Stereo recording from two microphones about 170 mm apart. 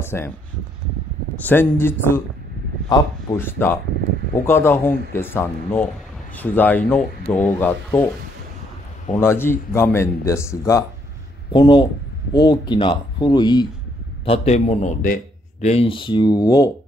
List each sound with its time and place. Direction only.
0.0 s a sound: 15° left (ahead or behind)
1.4 s speech: 10° left (ahead or behind)
3.3 s speech: 15° left (ahead or behind)
9.1 s speech: 15° left (ahead or behind)
14.2 s a man's voice: 35° left (ahead or behind)
15.6 s speech: 35° left (ahead or behind)